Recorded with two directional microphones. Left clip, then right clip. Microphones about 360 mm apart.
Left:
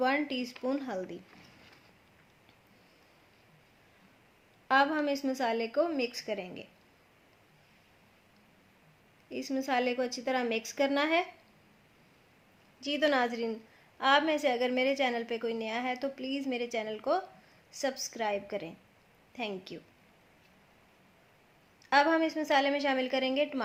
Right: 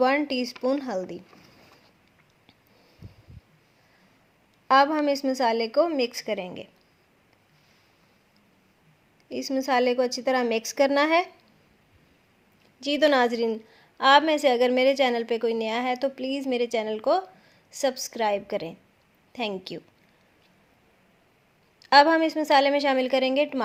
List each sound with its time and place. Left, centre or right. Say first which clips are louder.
0.0 s a woman's voice: right 7 dB; centre
4.7 s a woman's voice: right 7 dB; centre
9.3 s a woman's voice: right 7 dB; centre
12.8 s a woman's voice: right 8 dB; right
21.8 s a woman's voice: right 8 dB; right